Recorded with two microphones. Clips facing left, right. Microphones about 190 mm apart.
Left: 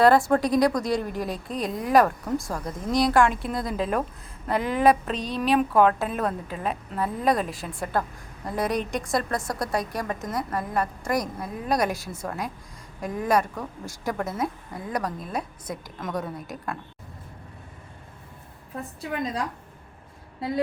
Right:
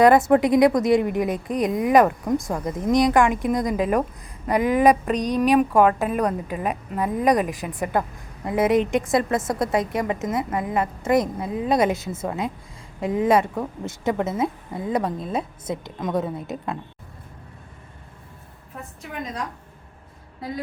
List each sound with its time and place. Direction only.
0.0 s a woman's voice: 20° right (ahead or behind)